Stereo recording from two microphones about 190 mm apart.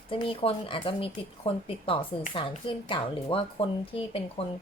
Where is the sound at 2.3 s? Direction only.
30° left (ahead or behind).